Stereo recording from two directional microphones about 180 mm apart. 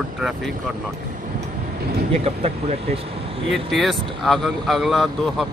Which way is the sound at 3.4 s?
Centre (ahead or behind).